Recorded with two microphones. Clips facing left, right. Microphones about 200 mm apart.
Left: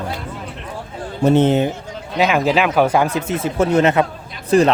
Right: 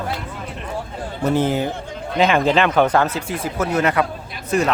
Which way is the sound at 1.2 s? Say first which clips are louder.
Left 5 dB; 25° left (ahead or behind).